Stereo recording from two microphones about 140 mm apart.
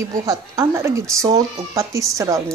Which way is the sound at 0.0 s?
20° right (ahead or behind).